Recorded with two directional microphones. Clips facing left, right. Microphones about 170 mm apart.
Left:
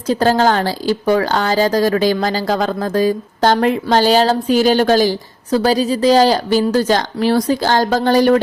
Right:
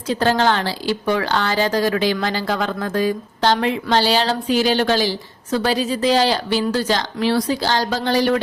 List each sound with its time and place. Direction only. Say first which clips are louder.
0.1 s a woman's voice: left 4 dB; 40° left (ahead or behind)